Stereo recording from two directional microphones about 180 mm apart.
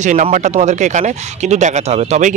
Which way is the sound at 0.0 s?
45° right (ahead or behind).